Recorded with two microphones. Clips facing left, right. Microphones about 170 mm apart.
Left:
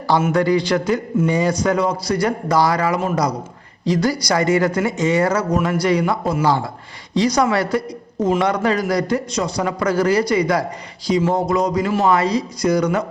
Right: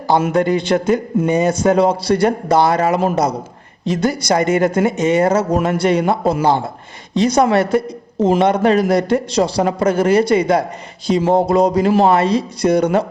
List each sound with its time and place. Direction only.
0.3 s a man's voice: 25° right (ahead or behind)